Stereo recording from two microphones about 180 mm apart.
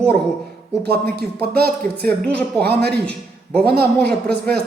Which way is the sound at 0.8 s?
60° right (ahead or behind).